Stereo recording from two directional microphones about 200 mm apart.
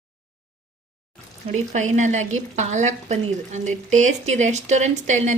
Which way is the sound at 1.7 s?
40° right (ahead or behind).